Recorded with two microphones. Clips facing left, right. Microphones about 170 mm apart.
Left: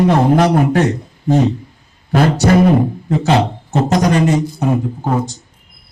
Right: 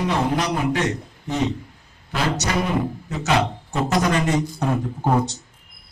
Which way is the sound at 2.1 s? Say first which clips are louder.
Left 11 dB; 55° left (ahead or behind).